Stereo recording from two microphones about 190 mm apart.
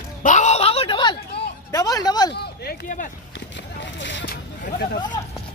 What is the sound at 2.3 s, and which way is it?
Speech, 60° left (ahead or behind).